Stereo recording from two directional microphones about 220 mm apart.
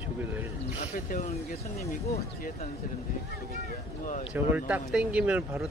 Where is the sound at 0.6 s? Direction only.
30° left (ahead or behind).